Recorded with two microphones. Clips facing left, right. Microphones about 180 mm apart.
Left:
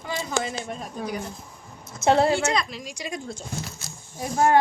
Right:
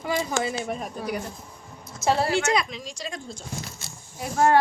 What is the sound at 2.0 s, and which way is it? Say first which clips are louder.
Speech: left 3 dB; 20° left (ahead or behind).